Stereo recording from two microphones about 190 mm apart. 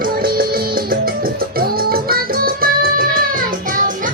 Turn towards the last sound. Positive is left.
turn(degrees=-50)  # may be behind; listen again after turning